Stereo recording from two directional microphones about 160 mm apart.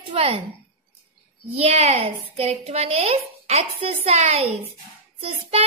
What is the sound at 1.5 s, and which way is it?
A woman's voice, 40° right (ahead or behind).